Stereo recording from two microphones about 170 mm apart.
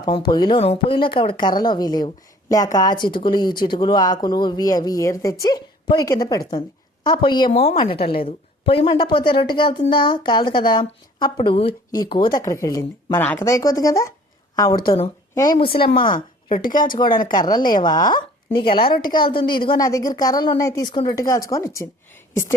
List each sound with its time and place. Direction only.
0.0 s speech: 25° left (ahead or behind)
12.4 s a woman's voice: 15° left (ahead or behind)
14.8 s a woman's voice: 35° left (ahead or behind)
16.1 s a woman's voice: 55° left (ahead or behind)
17.3 s speech: 25° left (ahead or behind)